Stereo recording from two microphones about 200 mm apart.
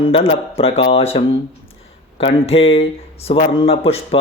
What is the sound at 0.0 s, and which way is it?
Speech, 30° left (ahead or behind).